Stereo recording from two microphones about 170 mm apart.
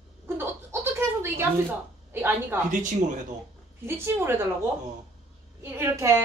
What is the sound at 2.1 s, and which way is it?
Speech, 10° right (ahead or behind).